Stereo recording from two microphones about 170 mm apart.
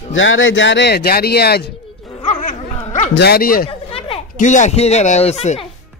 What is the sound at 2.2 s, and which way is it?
Dog, 45° left (ahead or behind).